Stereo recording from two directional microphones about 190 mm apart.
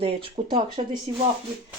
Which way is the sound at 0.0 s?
30° right (ahead or behind).